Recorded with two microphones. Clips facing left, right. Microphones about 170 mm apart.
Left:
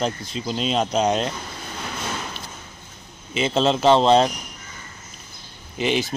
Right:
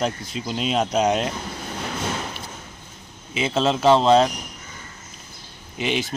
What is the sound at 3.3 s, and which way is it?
Speech, 5° right (ahead or behind).